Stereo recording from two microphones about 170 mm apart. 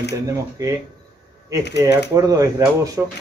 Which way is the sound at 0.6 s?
20° right (ahead or behind).